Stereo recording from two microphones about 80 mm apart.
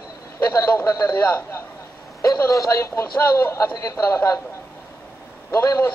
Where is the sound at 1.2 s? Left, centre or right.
Left.